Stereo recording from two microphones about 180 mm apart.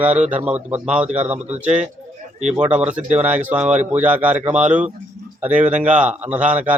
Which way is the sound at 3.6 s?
40° right (ahead or behind).